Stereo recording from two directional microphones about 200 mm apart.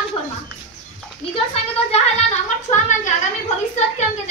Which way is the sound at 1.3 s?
30° left (ahead or behind).